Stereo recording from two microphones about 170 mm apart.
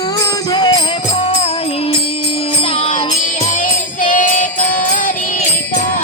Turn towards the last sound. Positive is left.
turn(degrees=50)  # may be behind; listen again after turning